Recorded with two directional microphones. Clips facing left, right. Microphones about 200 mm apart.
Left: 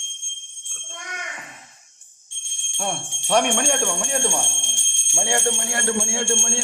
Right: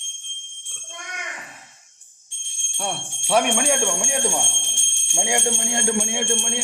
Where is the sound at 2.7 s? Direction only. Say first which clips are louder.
Left 1 dB; centre (ahead or behind).